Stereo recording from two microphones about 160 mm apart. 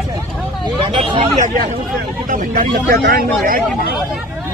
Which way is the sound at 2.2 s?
55° right (ahead or behind).